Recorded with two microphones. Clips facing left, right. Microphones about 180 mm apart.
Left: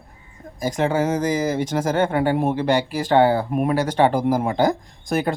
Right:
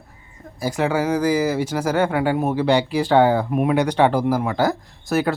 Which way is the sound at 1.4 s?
10° right (ahead or behind).